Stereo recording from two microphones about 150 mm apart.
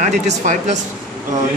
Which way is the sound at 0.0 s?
55° right (ahead or behind).